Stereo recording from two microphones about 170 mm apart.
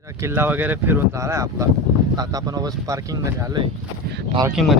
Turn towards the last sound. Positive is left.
turn(degrees=0)  # may be behind; listen again after turning